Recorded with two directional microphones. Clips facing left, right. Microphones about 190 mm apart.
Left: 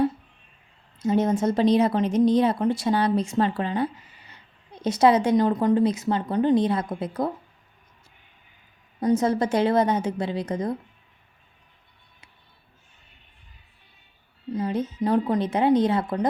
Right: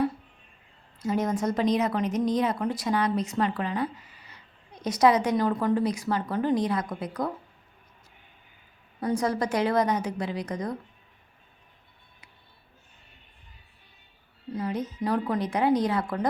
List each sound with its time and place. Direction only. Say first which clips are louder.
0.9 s a woman's voice: left 5 dB; 25° left (ahead or behind)
9.0 s a woman's voice: left 5 dB; 20° left (ahead or behind)
14.5 s a woman's voice: left 4 dB; 25° left (ahead or behind)